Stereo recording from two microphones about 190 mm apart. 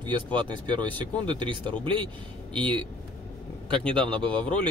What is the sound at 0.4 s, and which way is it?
Speech, 25° right (ahead or behind).